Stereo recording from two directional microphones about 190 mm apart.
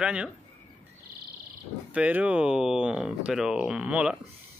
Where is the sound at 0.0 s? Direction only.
5° right (ahead or behind).